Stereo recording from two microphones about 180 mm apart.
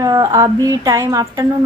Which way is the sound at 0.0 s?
20° right (ahead or behind).